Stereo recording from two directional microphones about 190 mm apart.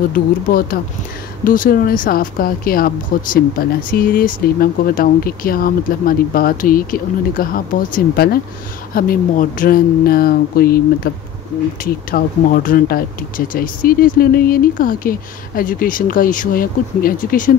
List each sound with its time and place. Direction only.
0.1 s speech: 50° left (ahead or behind)
12.2 s speech: 50° left (ahead or behind)